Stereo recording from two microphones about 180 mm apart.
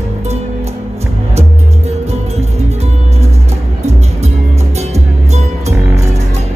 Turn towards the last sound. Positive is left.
turn(degrees=-40)  # may be behind; listen again after turning